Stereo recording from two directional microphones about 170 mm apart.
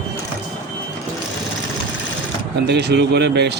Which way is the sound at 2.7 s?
75° right (ahead or behind).